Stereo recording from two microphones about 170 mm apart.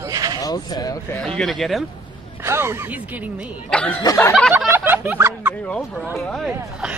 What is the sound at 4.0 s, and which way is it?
Speech, 20° left (ahead or behind).